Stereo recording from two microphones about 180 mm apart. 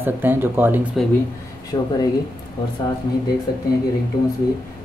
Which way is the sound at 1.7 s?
20° left (ahead or behind).